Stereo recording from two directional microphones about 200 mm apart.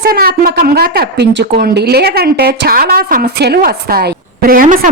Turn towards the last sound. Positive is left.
turn(degrees=-40)  # may be behind; listen again after turning